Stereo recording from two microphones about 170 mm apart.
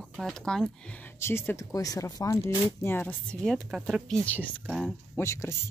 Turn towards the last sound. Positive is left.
turn(degrees=15)  # may be behind; listen again after turning